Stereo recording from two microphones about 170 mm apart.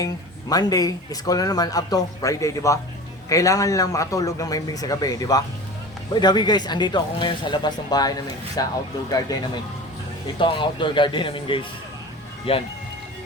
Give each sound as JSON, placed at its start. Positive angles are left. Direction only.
{"t": 0.0, "sound": "speech", "side_deg": 20}